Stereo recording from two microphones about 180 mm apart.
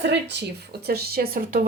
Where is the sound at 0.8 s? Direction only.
60° right (ahead or behind).